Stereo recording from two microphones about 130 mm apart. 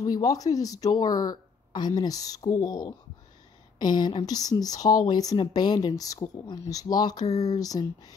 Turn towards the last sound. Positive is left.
turn(degrees=30)  # may be behind; listen again after turning